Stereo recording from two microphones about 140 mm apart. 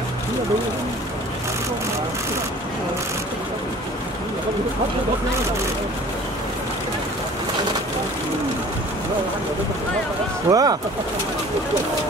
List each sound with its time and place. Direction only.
10.5 s speech: 25° right (ahead or behind)